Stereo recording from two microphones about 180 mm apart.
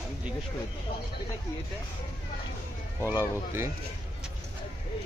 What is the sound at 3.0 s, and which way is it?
Speech, 15° right (ahead or behind).